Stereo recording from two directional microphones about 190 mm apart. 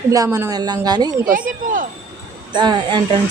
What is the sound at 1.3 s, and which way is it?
Speech, 45° right (ahead or behind).